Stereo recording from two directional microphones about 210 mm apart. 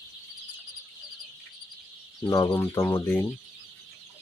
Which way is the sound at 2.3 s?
15° left (ahead or behind).